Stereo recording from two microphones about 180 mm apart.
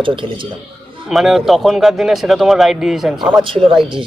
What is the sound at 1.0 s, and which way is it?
Speech, centre (ahead or behind).